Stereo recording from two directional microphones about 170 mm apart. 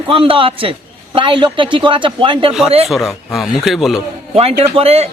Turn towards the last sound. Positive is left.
turn(degrees=-35)  # may be behind; listen again after turning